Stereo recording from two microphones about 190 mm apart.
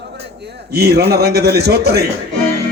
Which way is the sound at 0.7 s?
55° right (ahead or behind).